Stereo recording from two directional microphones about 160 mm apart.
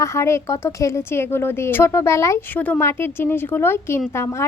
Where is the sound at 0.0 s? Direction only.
15° left (ahead or behind).